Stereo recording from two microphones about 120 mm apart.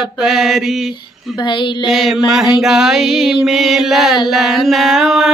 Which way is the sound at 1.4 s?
40° left (ahead or behind).